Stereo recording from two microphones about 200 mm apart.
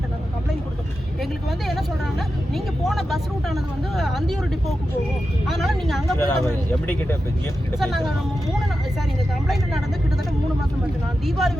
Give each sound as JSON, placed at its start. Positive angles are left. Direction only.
{"t": 1.2, "sound": "speech", "side_deg": 0}
{"t": 5.5, "sound": "speech", "side_deg": 0}
{"t": 6.1, "sound": "speech", "side_deg": 10}
{"t": 7.8, "sound": "speech", "side_deg": 0}
{"t": 11.3, "sound": "speech", "side_deg": 0}